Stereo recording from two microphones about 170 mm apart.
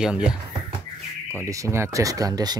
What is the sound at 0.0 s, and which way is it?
Speech, 5° right (ahead or behind).